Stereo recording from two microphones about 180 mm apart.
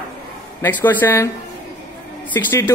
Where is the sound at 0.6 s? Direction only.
10° left (ahead or behind).